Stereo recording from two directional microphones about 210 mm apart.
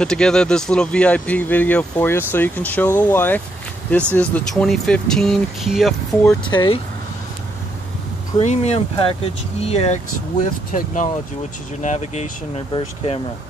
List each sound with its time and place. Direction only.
0.0 s speech: 5° left (ahead or behind)
6.4 s speech: 25° left (ahead or behind)
8.4 s speech: 30° left (ahead or behind)